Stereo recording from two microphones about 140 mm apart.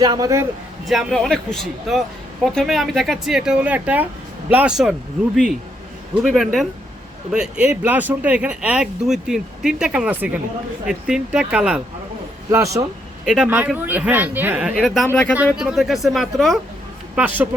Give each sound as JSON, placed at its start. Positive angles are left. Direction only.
{"t": 0.0, "sound": "a man's voice", "side_deg": -25}
{"t": 0.9, "sound": "speech", "side_deg": 0}
{"t": 12.5, "sound": "a man's voice", "side_deg": -20}
{"t": 13.2, "sound": "speech", "side_deg": -5}
{"t": 15.0, "sound": "speech", "side_deg": 10}
{"t": 15.5, "sound": "speech", "side_deg": 0}
{"t": 17.2, "sound": "speech", "side_deg": -10}